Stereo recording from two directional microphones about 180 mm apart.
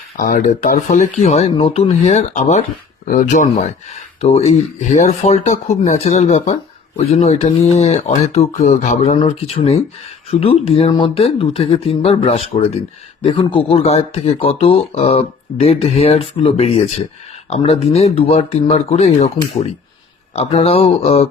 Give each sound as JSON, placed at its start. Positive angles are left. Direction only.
{"t": 0.2, "sound": "speech", "side_deg": 50}